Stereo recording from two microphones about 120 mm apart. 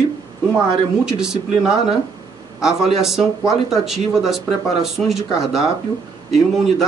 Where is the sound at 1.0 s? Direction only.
5° right (ahead or behind).